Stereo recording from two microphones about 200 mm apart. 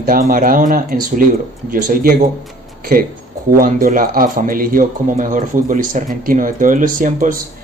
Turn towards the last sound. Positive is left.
turn(degrees=-45)  # may be behind; listen again after turning